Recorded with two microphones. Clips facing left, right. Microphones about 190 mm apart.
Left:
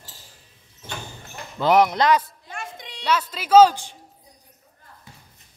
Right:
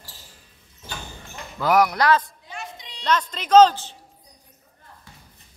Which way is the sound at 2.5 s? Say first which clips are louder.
Left 1 dB; 50° left (ahead or behind).